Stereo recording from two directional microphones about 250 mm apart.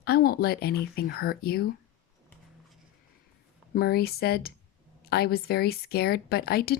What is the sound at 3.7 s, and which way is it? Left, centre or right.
A woman's voice, left.